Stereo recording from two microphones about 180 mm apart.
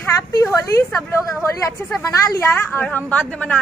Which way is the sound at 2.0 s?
15° left (ahead or behind).